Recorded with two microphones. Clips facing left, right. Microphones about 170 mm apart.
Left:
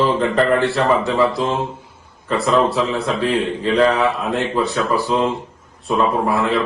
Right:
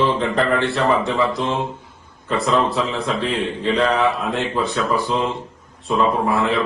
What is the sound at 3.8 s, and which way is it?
Speech, centre (ahead or behind).